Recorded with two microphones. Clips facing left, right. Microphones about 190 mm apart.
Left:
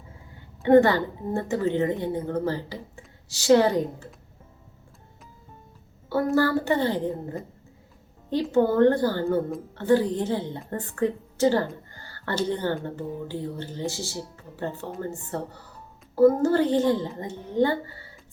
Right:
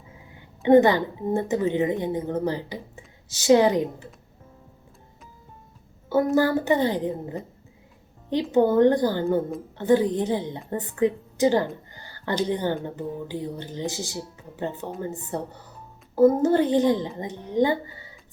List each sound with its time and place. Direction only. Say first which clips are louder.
0.6 s a woman's voice: right 1 dB; 15° right (ahead or behind)
6.3 s a woman's voice: even; 20° right (ahead or behind)